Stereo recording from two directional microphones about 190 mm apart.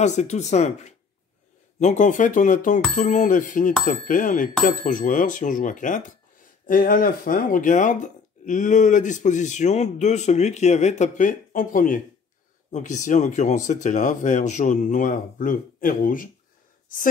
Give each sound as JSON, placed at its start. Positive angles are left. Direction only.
{"t": 0.0, "sound": "speech", "side_deg": 40}